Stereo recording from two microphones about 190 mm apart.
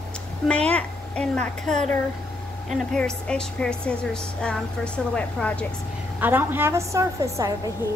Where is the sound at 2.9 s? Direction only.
5° left (ahead or behind).